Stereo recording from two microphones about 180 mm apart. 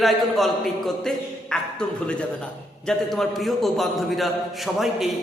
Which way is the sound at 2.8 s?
Centre (ahead or behind).